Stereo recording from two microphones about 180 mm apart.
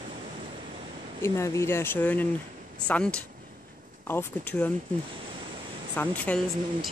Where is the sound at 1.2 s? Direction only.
15° left (ahead or behind).